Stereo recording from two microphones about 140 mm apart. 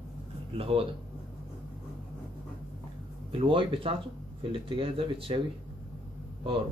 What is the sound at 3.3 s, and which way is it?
Speech, 40° right (ahead or behind).